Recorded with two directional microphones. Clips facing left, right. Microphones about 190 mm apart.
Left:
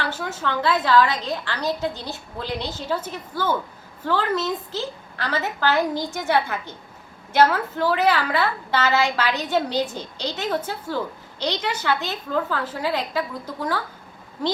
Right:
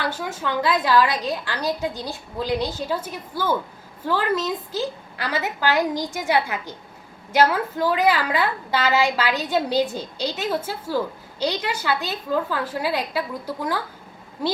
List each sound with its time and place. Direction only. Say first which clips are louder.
0.0 s a woman's voice: even; 15° right (ahead or behind)